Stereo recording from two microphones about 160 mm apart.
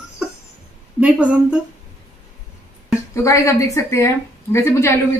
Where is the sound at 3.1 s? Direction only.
20° left (ahead or behind).